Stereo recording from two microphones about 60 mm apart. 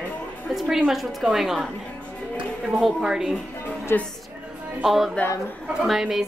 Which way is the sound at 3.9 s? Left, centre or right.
Left.